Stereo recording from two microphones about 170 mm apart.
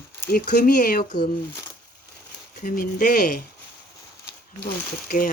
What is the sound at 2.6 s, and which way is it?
Speech, 55° left (ahead or behind).